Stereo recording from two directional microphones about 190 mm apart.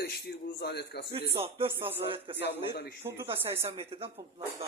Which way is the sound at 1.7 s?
10° right (ahead or behind).